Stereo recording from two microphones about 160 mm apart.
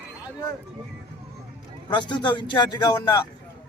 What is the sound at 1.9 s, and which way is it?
A man's voice, 30° left (ahead or behind).